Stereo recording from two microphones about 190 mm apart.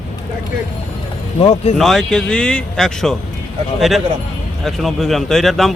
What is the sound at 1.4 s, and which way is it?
Speech, 30° left (ahead or behind).